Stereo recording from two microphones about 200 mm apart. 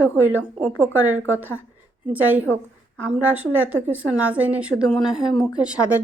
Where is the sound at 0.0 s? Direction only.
90° right.